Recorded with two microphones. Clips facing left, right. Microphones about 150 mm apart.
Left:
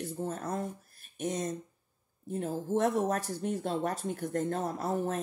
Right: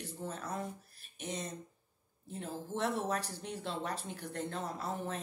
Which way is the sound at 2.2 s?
50° left (ahead or behind).